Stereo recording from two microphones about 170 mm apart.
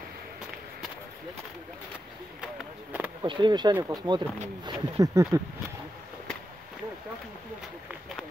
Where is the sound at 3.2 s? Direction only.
30° right (ahead or behind).